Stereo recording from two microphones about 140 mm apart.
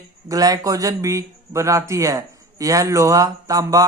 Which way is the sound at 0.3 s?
25° right (ahead or behind).